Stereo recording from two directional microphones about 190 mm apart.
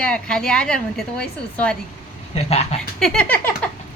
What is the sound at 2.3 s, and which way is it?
Speech, 35° left (ahead or behind).